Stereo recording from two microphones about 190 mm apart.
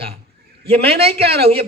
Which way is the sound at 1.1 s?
60° right (ahead or behind).